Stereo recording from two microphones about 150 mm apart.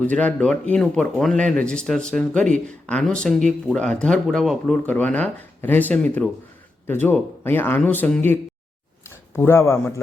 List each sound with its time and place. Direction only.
0.0 s speech: 10° left (ahead or behind)